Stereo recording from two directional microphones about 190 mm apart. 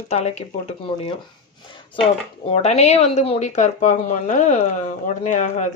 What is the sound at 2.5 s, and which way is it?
Speech, 35° left (ahead or behind).